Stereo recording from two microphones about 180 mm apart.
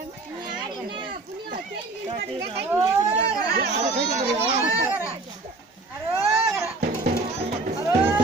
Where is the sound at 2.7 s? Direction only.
15° right (ahead or behind).